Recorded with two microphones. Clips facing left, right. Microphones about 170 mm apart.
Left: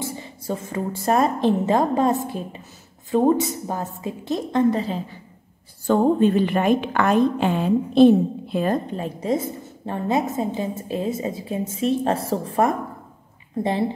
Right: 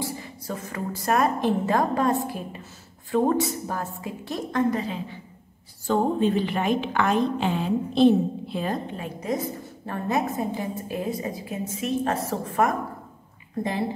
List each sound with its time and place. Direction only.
0.0 s a woman's voice: 25° left (ahead or behind)
5.9 s a woman's voice: 55° left (ahead or behind)
8.9 s a woman's voice: 30° left (ahead or behind)